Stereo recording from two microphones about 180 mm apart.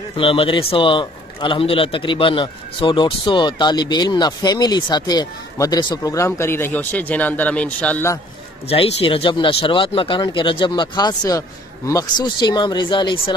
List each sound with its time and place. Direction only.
0.1 s a man's voice: 30° left (ahead or behind); by 8.2 s 10° left (ahead or behind)
8.6 s a man's voice: 35° left (ahead or behind)